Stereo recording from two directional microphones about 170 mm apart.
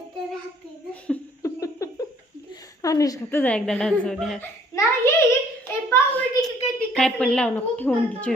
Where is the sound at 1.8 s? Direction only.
20° left (ahead or behind).